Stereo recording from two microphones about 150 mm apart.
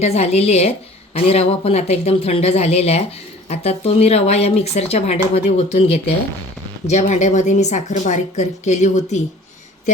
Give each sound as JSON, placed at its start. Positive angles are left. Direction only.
{"t": 0.0, "sound": "speech", "side_deg": 45}